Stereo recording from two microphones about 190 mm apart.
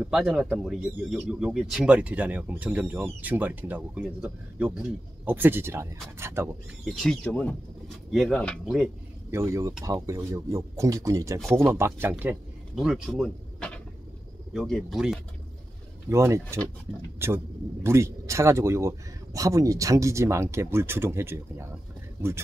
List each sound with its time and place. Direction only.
0.0 s speech: 5° right (ahead or behind)
6.8 s speech: centre (ahead or behind)
9.3 s speech: 15° right (ahead or behind)
16.1 s speech: 15° right (ahead or behind)